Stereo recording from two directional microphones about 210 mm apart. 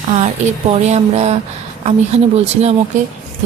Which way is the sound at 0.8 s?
30° right (ahead or behind).